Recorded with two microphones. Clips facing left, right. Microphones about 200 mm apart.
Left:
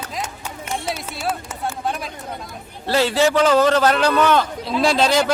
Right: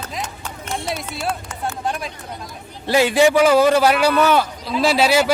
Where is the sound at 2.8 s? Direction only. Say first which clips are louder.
Right 3 dB; 15° right (ahead or behind).